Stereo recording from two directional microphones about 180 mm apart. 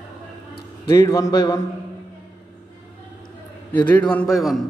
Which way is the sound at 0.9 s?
20° left (ahead or behind).